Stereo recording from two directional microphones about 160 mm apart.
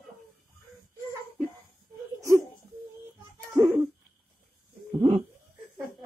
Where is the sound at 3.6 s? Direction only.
5° right (ahead or behind).